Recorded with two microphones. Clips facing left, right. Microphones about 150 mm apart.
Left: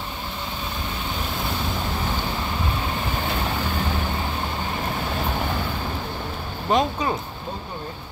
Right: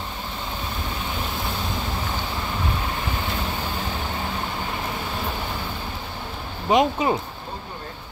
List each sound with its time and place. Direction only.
6.7 s speech: 20° right (ahead or behind)